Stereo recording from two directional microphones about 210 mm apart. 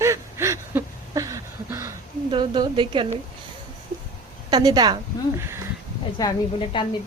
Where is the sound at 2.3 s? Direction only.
20° right (ahead or behind).